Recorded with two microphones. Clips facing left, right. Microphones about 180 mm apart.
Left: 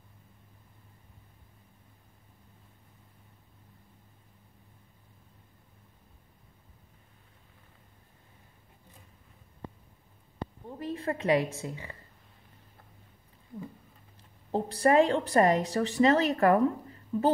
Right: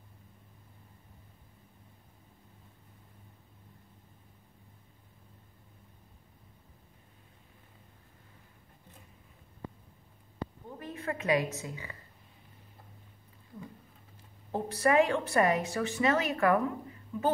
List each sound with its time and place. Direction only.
10.4 s a woman's voice: 30° left (ahead or behind)
14.5 s a woman's voice: 35° left (ahead or behind)